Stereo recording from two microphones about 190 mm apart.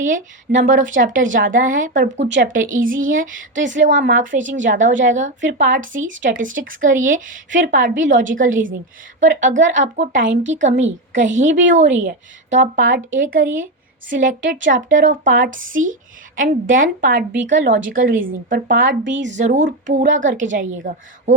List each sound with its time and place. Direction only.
0.0 s a woman's voice: 45° right (ahead or behind)
10.2 s speech: 80° right
10.6 s a woman's voice: 40° right (ahead or behind)